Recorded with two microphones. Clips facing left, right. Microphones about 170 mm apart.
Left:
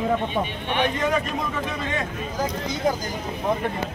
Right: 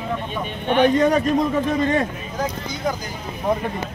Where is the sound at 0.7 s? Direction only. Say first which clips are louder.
Right 8 dB; 40° right (ahead or behind).